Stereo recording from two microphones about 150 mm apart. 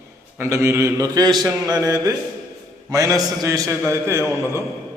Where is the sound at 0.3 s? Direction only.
20° right (ahead or behind).